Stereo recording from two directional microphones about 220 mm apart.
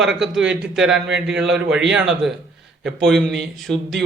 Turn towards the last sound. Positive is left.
turn(degrees=0)  # may be behind; listen again after turning